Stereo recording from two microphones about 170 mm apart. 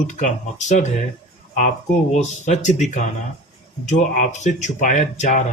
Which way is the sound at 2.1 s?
45° left (ahead or behind).